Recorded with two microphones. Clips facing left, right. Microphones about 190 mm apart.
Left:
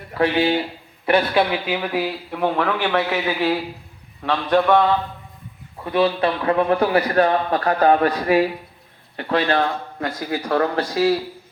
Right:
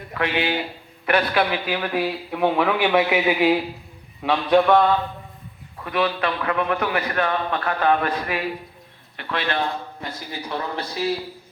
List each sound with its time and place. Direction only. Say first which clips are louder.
0.1 s a man's voice: left 5 dB; 35° left (ahead or behind)
1.7 s a man's voice: left 1 dB; 5° left (ahead or behind)
5.8 s a man's voice: left 4 dB; 30° left (ahead or behind)
9.6 s a man's voice: left 4 dB; 80° left